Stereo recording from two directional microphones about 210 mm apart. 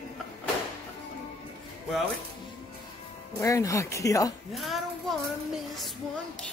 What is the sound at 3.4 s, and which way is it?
Speech, 15° left (ahead or behind).